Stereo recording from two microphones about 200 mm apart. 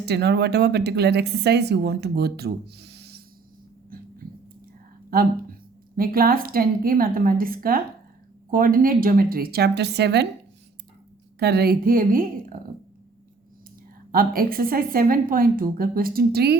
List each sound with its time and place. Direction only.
0.0 s speech: 55° right (ahead or behind)
3.9 s a sound: 45° right (ahead or behind)
6.0 s a woman's voice: 45° right (ahead or behind)
11.3 s a woman's voice: 50° right (ahead or behind)
14.1 s a woman's voice: 45° right (ahead or behind)